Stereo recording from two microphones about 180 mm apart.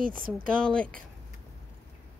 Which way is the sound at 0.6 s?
5° left (ahead or behind).